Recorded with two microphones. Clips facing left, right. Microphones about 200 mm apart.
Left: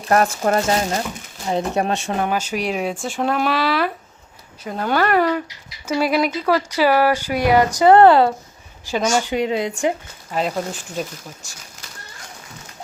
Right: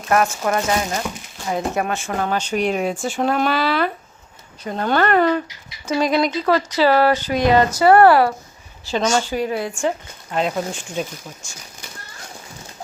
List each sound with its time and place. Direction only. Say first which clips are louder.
0.1 s speech: left 1 dB; 35° left (ahead or behind)
2.3 s speech: right 2 dB; 5° left (ahead or behind); by 8.3 s 20° left (ahead or behind)
8.9 s speech: even; 10° left (ahead or behind)
10.3 s speech: right 1 dB; 5° left (ahead or behind)